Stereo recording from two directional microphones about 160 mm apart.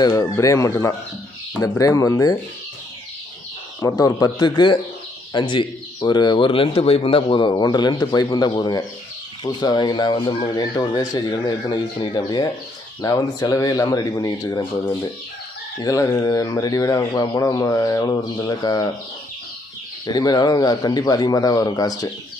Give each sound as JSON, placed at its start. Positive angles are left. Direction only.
{"t": 0.0, "sound": "speech", "side_deg": 20}
{"t": 3.8, "sound": "speech", "side_deg": 20}
{"t": 20.1, "sound": "speech", "side_deg": 25}